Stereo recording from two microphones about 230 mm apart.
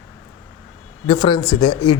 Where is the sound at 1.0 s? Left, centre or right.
Left.